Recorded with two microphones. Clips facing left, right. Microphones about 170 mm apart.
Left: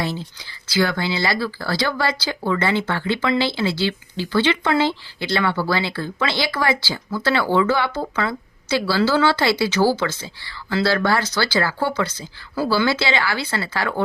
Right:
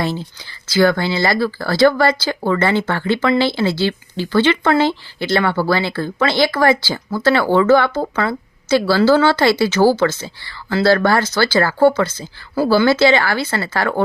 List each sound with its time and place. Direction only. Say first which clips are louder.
0.7 s a woman's voice: right 6 dB; 45° right (ahead or behind)